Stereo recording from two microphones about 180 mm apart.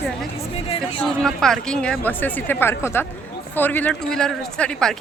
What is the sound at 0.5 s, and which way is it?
Speech, 30° left (ahead or behind).